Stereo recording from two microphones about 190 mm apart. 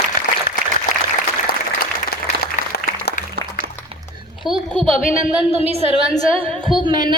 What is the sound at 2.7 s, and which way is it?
Applause, 50° left (ahead or behind).